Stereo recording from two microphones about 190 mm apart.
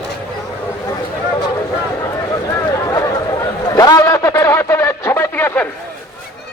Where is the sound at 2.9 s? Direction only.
15° left (ahead or behind).